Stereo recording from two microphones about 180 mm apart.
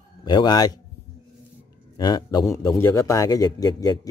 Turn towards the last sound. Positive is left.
turn(degrees=20)  # may be behind; listen again after turning